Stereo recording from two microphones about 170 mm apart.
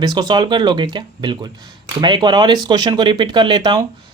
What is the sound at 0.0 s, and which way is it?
Speech, 25° right (ahead or behind).